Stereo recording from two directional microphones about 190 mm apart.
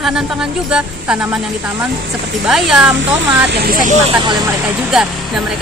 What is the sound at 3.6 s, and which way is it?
Speech, 50° right (ahead or behind).